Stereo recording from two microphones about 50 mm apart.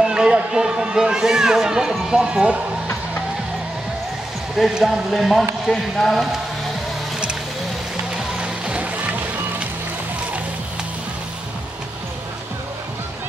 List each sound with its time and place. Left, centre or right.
0.0 s speech: centre
4.6 s speech: centre
8.4 s music: right